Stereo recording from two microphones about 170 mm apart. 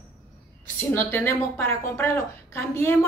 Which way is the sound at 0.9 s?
15° left (ahead or behind).